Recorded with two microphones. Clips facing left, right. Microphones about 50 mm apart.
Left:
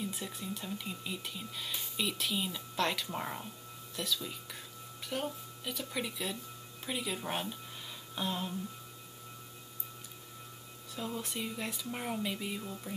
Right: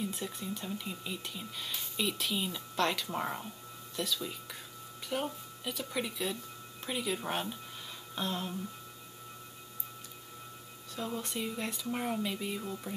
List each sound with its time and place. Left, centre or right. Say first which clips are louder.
0.0 s speech: right 2 dB; centre
11.0 s speech: right 2 dB; centre